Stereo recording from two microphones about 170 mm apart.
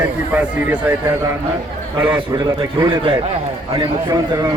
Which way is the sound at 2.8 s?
25° right (ahead or behind).